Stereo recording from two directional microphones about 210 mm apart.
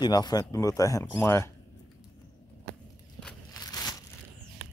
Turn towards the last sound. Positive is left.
turn(degrees=15)  # may be behind; listen again after turning